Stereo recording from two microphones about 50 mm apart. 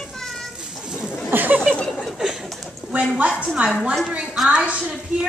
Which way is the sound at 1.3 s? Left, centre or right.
Right.